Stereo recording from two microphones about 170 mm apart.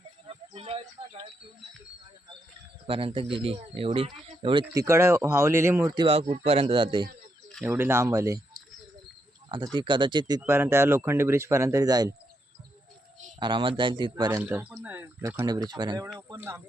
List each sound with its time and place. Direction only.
0.3 s a sound: 35° right (ahead or behind)
2.8 s speech: 30° right (ahead or behind)
4.6 s speech: 20° right (ahead or behind)
6.0 s speech: 35° right (ahead or behind)
7.6 s speech: 15° right (ahead or behind)
9.7 s speech: 30° right (ahead or behind)
13.4 s speech: 30° right (ahead or behind)
14.4 s speech: 10° right (ahead or behind)
15.7 s speech: 25° right (ahead or behind)
16.1 s speech: 15° right (ahead or behind)